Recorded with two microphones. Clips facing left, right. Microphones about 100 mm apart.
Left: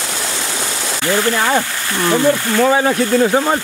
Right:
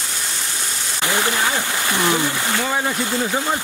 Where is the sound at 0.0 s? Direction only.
90° left.